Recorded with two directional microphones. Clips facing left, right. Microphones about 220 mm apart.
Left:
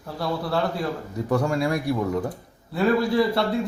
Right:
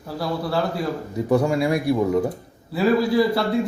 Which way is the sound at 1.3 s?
15° right (ahead or behind).